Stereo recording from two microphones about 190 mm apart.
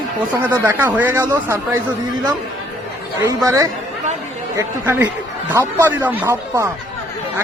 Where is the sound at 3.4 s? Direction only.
15° right (ahead or behind).